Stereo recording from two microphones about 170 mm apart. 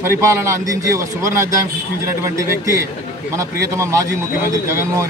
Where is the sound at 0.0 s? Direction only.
15° right (ahead or behind).